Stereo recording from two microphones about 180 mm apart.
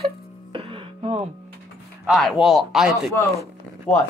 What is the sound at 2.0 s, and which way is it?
Speech, centre (ahead or behind).